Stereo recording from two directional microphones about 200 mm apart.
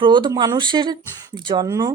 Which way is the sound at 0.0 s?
25° right (ahead or behind).